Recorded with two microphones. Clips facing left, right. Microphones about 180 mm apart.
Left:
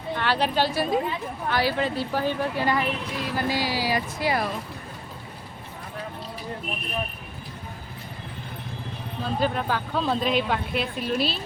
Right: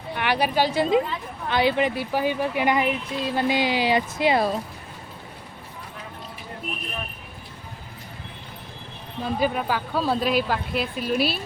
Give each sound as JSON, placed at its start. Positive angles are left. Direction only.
{"t": 0.2, "sound": "a woman's voice", "side_deg": -15}
{"t": 9.2, "sound": "speech", "side_deg": -10}